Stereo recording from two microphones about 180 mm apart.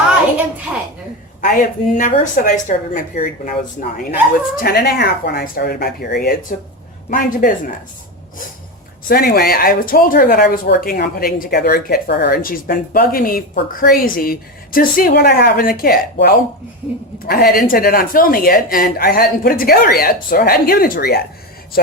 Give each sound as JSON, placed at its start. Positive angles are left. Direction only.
{"t": 1.4, "sound": "speech", "side_deg": 45}
{"t": 4.5, "sound": "speech", "side_deg": 60}
{"t": 7.1, "sound": "speech", "side_deg": 50}
{"t": 9.0, "sound": "speech", "side_deg": 55}